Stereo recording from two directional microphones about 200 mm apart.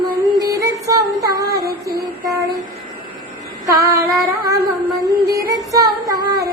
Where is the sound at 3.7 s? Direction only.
15° right (ahead or behind).